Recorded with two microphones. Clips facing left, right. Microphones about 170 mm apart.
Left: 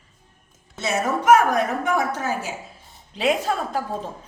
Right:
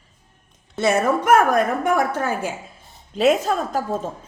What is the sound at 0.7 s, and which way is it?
A woman's voice, 55° right (ahead or behind).